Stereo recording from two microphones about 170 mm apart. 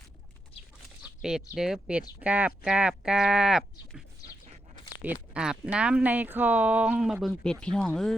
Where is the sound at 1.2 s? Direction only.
5° right (ahead or behind).